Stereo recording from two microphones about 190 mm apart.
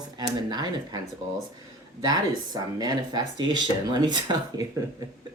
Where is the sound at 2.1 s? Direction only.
20° right (ahead or behind).